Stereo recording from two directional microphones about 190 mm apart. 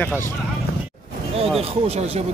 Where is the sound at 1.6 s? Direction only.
30° right (ahead or behind).